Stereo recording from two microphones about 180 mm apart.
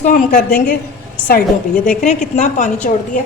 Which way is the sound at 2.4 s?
40° left (ahead or behind).